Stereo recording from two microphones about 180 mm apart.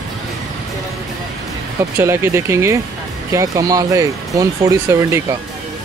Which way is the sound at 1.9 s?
15° right (ahead or behind).